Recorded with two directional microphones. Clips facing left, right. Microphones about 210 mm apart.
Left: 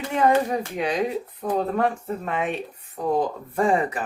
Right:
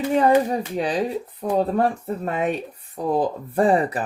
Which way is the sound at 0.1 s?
35° right (ahead or behind).